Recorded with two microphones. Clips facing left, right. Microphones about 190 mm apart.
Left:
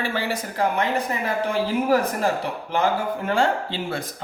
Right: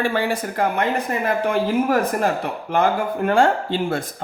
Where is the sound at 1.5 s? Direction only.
55° right (ahead or behind).